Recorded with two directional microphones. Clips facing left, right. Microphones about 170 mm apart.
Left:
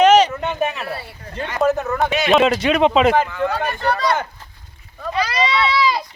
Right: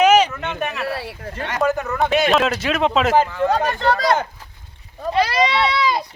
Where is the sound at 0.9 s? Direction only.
90° right.